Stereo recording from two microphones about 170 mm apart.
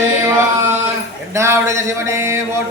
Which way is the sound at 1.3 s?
15° right (ahead or behind).